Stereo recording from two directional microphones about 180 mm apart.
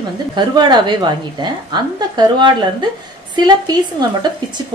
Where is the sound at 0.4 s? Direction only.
25° right (ahead or behind).